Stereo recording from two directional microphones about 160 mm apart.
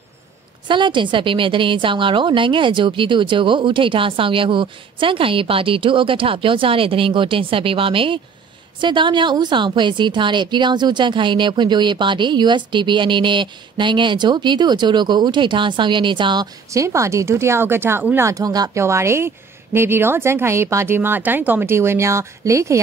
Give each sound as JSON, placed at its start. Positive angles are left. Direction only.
{"t": 0.7, "sound": "a woman's voice", "side_deg": -30}